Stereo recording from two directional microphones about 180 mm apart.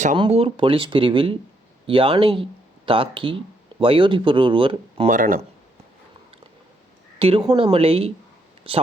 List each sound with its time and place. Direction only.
0.2 s speech: 30° right (ahead or behind)
5.0 s speech: 50° right (ahead or behind)
7.2 s a woman's voice: 30° right (ahead or behind)